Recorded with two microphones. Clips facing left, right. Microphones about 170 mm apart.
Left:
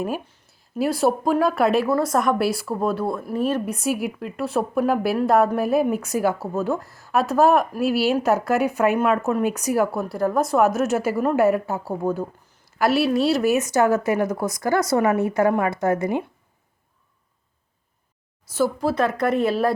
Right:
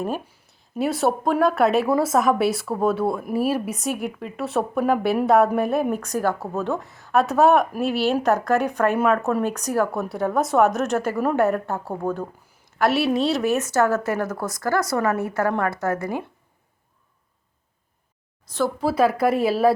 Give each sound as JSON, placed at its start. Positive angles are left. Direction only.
{"t": 0.5, "sound": "speech", "side_deg": 0}
{"t": 3.8, "sound": "a woman's voice", "side_deg": 5}
{"t": 18.5, "sound": "speech", "side_deg": 5}
{"t": 18.9, "sound": "speech", "side_deg": -10}